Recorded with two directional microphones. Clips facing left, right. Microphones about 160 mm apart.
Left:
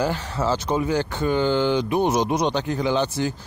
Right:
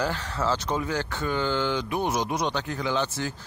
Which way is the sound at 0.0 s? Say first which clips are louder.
Left 4 dB; 15° left (ahead or behind).